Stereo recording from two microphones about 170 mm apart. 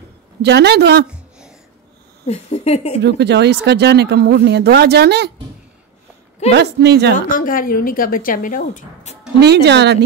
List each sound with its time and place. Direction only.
0.4 s speech: 80° right
2.2 s speech: 40° left (ahead or behind)
3.0 s speech: 80° right
6.5 s speech: 80° right
7.2 s speech: 55° left (ahead or behind)
9.4 s speech: 75° right (ahead or behind)